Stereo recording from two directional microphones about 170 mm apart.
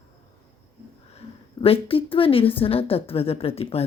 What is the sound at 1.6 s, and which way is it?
A woman's voice, 35° left (ahead or behind).